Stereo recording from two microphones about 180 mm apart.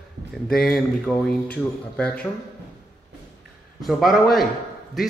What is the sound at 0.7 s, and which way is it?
Speech, 5° left (ahead or behind).